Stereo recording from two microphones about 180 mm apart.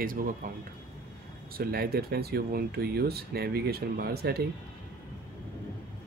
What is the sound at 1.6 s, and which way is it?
Speech, 60° right (ahead or behind).